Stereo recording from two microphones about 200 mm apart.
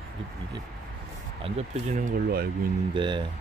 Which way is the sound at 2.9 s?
25° right (ahead or behind).